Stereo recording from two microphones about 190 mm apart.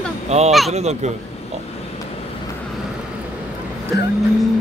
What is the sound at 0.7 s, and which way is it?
Speech, 35° right (ahead or behind).